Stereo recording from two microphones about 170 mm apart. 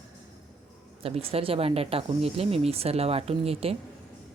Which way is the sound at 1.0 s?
35° right (ahead or behind).